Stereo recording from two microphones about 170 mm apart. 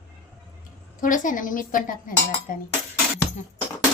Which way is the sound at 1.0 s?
50° left (ahead or behind).